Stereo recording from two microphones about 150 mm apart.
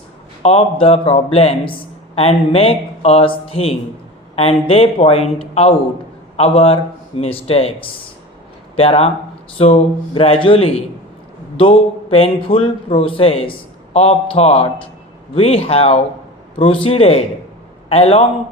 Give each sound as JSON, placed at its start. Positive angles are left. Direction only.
{"t": 0.4, "sound": "a man's voice", "side_deg": 40}